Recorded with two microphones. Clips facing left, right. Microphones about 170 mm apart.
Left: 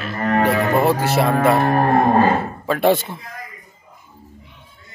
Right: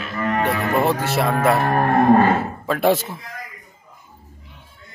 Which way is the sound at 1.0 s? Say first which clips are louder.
Left 3 dB; centre (ahead or behind).